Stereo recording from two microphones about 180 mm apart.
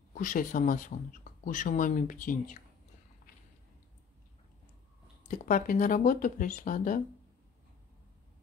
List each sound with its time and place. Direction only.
0.1 s speech: 50° left (ahead or behind)
5.3 s speech: 45° left (ahead or behind)